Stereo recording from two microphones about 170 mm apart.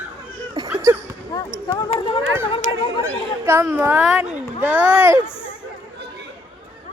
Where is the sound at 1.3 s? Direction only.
20° left (ahead or behind).